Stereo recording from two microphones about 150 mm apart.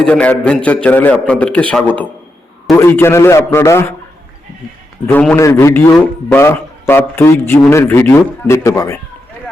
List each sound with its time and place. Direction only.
0.0 s a man's voice: 5° left (ahead or behind)
5.4 s a man's voice: 20° left (ahead or behind)